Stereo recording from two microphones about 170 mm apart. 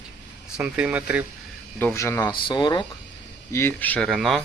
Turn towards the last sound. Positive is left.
turn(degrees=0)  # may be behind; listen again after turning